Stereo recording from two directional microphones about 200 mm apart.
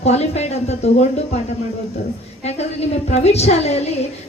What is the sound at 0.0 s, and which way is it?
A woman's voice, 30° left (ahead or behind).